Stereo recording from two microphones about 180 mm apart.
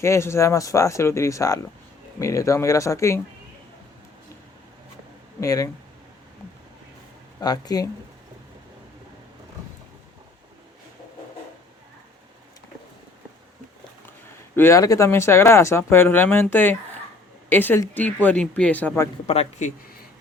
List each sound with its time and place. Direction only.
0.0 s speech: 15° left (ahead or behind)
5.4 s speech: 20° left (ahead or behind)
7.4 s speech: 20° left (ahead or behind)
14.5 s speech: 15° left (ahead or behind)
19.3 s speech: 40° left (ahead or behind)